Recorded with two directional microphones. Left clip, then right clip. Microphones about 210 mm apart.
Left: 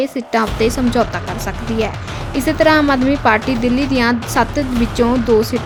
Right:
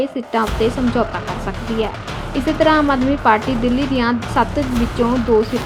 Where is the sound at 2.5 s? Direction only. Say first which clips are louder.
Left 2 dB; 40° left (ahead or behind).